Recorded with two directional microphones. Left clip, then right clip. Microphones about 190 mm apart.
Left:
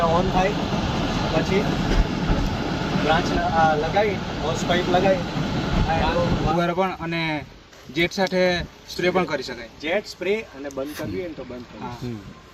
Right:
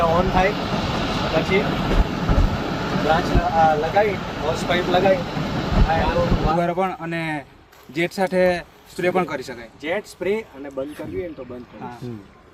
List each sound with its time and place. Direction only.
0.0 s speech: 20° right (ahead or behind)
0.6 s vehicle: 20° right (ahead or behind)
3.1 s speech: 15° right (ahead or behind)